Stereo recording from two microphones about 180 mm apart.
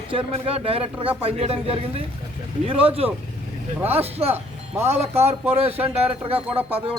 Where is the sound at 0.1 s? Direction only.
30° right (ahead or behind).